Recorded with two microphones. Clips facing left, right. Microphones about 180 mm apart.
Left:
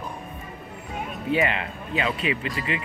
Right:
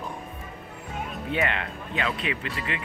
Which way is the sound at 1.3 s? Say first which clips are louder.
Left 4 dB; 5° left (ahead or behind).